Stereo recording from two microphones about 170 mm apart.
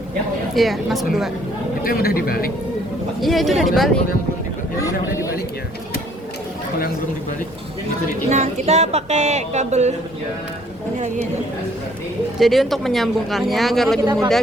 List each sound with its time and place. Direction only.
0.5 s speech: centre (ahead or behind)
1.8 s speech: 60° left (ahead or behind)
3.2 s speech: centre (ahead or behind)
4.8 s speech: 20° left (ahead or behind)
6.7 s speech: 60° left (ahead or behind)
8.3 s speech: 40° right (ahead or behind)
12.4 s speech: centre (ahead or behind)
14.0 s speech: 20° right (ahead or behind)